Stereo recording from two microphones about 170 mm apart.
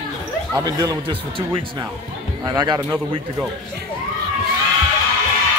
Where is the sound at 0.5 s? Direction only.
25° right (ahead or behind).